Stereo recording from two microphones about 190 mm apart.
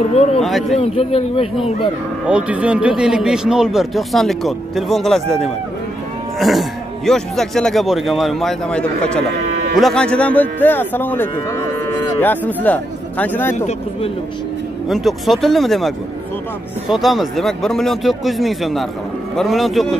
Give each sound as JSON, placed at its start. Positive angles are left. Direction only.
{"t": 0.1, "sound": "a man's voice", "side_deg": 35}
{"t": 0.4, "sound": "speech", "side_deg": 0}
{"t": 0.7, "sound": "a man's voice", "side_deg": 30}
{"t": 2.2, "sound": "a man's voice", "side_deg": -5}
{"t": 14.9, "sound": "speech", "side_deg": 0}
{"t": 16.9, "sound": "speech", "side_deg": 0}